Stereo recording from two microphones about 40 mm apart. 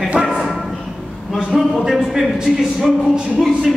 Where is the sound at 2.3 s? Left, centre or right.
Centre.